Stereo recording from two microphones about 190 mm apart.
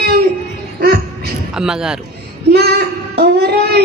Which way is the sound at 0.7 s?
55° right (ahead or behind).